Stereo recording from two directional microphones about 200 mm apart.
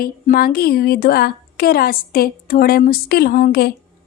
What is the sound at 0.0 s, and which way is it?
Speech, 50° left (ahead or behind).